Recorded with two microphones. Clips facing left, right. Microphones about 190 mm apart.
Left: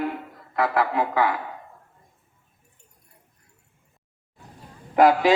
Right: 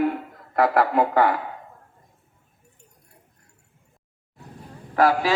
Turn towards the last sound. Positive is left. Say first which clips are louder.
# left 3 dB
turn(degrees=20)  # may be behind; listen again after turning